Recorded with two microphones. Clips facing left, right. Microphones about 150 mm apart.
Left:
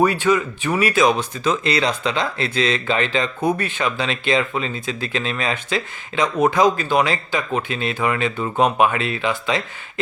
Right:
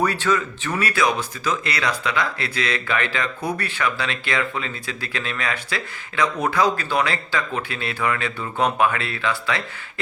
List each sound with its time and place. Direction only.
0.0 s speech: 15° left (ahead or behind)